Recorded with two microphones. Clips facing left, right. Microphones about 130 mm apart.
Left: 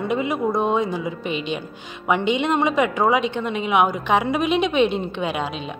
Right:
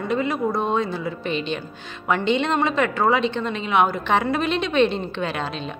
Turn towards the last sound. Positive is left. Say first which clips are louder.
# left 2 dB
turn(degrees=10)  # may be behind; listen again after turning